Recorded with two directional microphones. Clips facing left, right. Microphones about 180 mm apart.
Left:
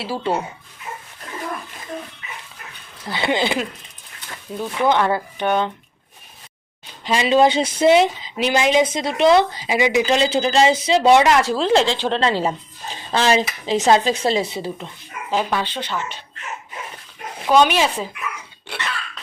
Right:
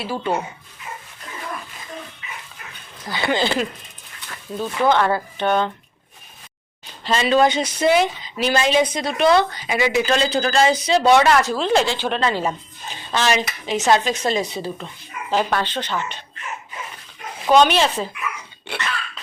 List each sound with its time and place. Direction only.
0.0 s speech: 30° left (ahead or behind)
3.1 s speech: 20° left (ahead or behind)
4.6 s speech: 15° left (ahead or behind)
7.0 s speech: 15° left (ahead or behind)
15.3 s speech: 5° left (ahead or behind)
17.5 s speech: 10° left (ahead or behind)